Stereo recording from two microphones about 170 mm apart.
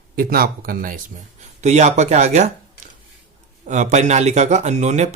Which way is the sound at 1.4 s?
40° right (ahead or behind).